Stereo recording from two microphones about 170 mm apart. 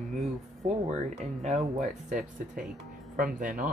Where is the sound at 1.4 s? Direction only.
45° right (ahead or behind).